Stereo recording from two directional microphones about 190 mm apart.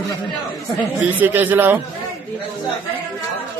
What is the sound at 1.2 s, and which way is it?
Speech, 10° right (ahead or behind).